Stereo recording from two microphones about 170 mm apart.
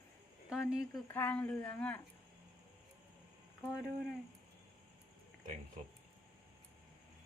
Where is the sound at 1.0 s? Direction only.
10° left (ahead or behind).